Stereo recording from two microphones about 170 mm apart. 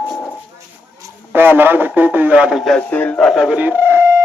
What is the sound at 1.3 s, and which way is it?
Speech, 10° right (ahead or behind).